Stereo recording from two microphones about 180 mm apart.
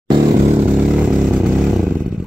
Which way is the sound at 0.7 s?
5° right (ahead or behind).